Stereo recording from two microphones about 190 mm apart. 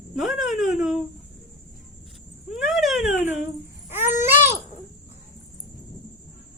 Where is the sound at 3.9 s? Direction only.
10° right (ahead or behind).